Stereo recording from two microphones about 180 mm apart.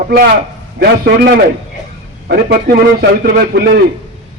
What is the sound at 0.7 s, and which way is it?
A man's voice, 60° right (ahead or behind).